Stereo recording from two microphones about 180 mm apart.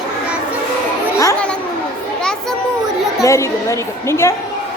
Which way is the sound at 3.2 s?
15° left (ahead or behind).